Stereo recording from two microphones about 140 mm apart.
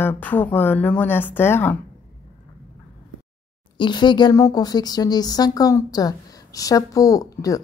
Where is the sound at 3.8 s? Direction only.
35° left (ahead or behind).